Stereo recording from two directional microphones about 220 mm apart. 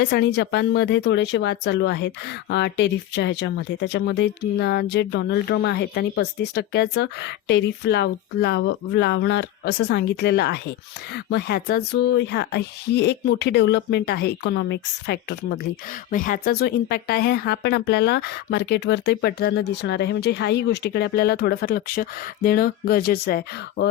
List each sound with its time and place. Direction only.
0.0 s speech: 50° left (ahead or behind)
16.1 s speech: 40° left (ahead or behind)